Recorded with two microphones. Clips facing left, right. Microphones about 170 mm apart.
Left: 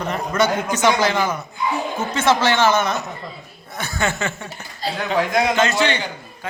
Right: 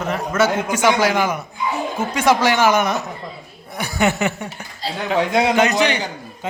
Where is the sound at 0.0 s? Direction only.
5° right (ahead or behind); by 5.5 s 25° right (ahead or behind).